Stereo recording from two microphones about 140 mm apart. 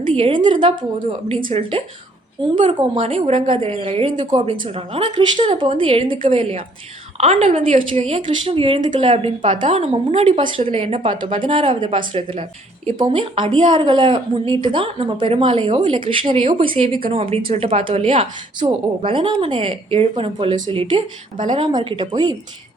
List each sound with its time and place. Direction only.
0.0 s a woman's voice: 40° right (ahead or behind)